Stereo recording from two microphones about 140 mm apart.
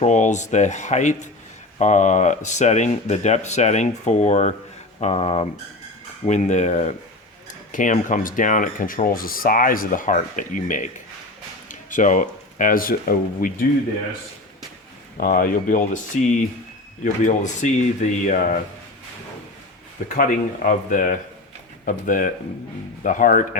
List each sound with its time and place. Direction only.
0.0 s speech: 60° left (ahead or behind)
6.2 s speech: 55° left (ahead or behind)
7.7 s speech: 70° left (ahead or behind); by 13.7 s 90° left
15.2 s speech: 80° left; by 18.5 s 60° left (ahead or behind)
20.1 s speech: 70° left (ahead or behind)